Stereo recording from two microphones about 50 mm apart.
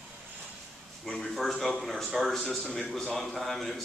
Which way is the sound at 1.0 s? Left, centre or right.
Centre.